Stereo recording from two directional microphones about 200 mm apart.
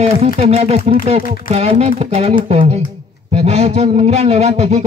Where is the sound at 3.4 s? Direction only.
30° right (ahead or behind).